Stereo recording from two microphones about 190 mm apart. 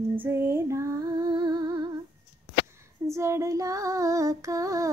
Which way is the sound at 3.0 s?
15° right (ahead or behind).